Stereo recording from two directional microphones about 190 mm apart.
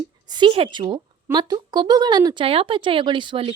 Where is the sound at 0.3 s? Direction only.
25° right (ahead or behind).